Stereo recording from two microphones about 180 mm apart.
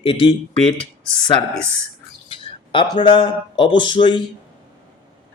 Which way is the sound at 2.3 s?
30° left (ahead or behind).